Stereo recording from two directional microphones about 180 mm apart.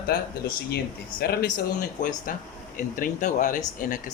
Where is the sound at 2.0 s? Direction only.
45° left (ahead or behind).